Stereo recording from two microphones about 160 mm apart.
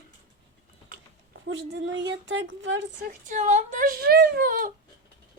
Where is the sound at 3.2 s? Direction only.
50° right (ahead or behind).